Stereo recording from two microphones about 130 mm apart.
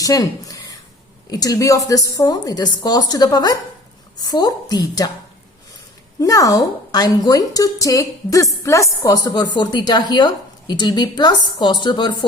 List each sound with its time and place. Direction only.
0.0 s a woman's voice: 25° left (ahead or behind)
6.1 s a woman's voice: 25° left (ahead or behind)